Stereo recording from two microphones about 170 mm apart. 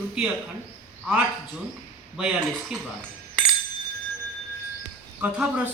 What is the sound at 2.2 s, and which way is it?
Speech, 5° right (ahead or behind).